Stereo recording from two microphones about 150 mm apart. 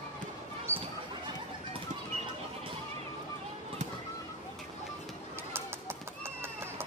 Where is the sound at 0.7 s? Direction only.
15° right (ahead or behind).